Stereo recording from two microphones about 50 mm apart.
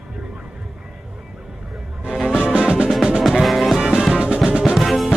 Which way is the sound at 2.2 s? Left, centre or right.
Centre.